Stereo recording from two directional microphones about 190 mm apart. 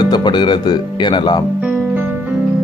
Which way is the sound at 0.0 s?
20° left (ahead or behind).